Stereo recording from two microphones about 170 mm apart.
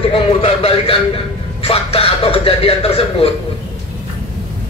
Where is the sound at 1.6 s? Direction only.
35° left (ahead or behind).